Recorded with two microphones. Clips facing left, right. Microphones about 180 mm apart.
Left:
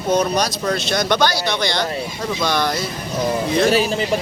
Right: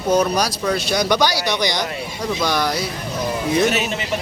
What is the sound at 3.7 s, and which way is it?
Speech, 35° left (ahead or behind).